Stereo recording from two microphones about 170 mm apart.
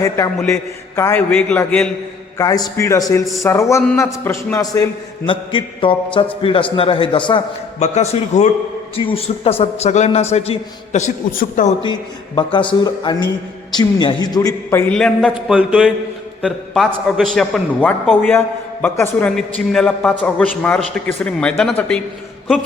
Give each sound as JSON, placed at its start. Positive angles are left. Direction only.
{"t": 0.9, "sound": "a man's voice", "side_deg": 15}
{"t": 2.4, "sound": "a man's voice", "side_deg": 20}
{"t": 7.8, "sound": "a man's voice", "side_deg": 40}
{"t": 11.8, "sound": "a man's voice", "side_deg": 25}